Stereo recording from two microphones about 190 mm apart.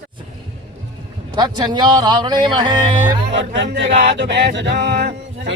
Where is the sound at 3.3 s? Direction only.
70° right (ahead or behind).